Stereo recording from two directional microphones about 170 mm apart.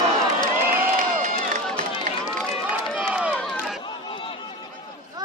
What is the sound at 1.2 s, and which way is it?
Run, 50° right (ahead or behind).